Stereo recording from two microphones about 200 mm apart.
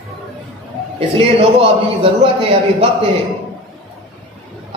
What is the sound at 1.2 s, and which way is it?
A man's voice, 30° right (ahead or behind).